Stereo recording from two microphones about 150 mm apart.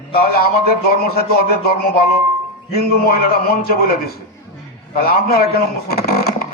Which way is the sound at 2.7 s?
90° left.